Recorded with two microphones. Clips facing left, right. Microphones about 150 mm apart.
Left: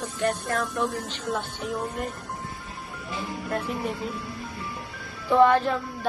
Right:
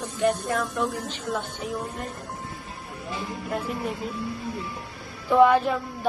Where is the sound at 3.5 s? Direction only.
5° right (ahead or behind).